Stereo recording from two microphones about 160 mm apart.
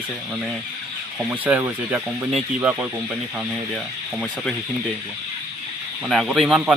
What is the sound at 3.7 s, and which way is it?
Speech, centre (ahead or behind).